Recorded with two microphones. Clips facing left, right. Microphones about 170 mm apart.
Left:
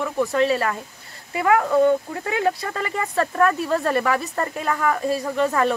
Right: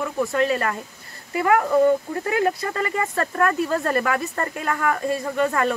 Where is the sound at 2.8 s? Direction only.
Centre (ahead or behind).